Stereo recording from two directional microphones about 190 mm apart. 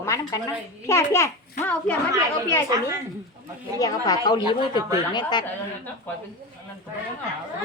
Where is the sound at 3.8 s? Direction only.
20° left (ahead or behind).